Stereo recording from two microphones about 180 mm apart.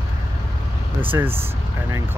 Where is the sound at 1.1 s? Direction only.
15° right (ahead or behind).